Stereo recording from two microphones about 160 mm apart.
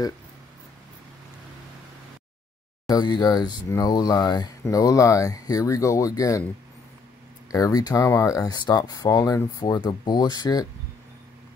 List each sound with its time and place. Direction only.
2.9 s speech: 25° left (ahead or behind)
7.5 s speech: 25° left (ahead or behind)